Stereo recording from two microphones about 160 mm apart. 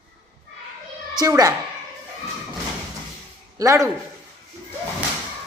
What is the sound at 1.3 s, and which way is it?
Speech, 20° right (ahead or behind).